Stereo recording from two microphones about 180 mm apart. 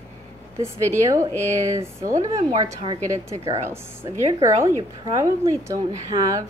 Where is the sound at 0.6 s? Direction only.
15° right (ahead or behind).